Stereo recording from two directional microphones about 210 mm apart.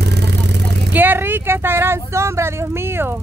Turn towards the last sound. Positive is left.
turn(degrees=-10)  # may be behind; listen again after turning